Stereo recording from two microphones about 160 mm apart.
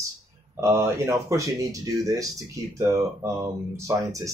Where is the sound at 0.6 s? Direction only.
15° right (ahead or behind).